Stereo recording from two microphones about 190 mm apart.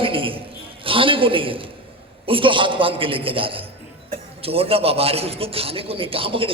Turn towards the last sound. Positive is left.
turn(degrees=-30)  # may be behind; listen again after turning